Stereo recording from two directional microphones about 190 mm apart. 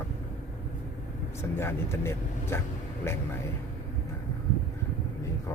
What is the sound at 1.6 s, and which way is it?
Speech, 15° left (ahead or behind).